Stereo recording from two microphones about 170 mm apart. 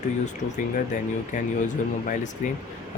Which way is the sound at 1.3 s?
45° left (ahead or behind).